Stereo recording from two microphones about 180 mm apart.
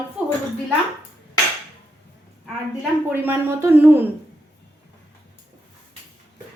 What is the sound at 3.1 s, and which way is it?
Speech, 10° right (ahead or behind).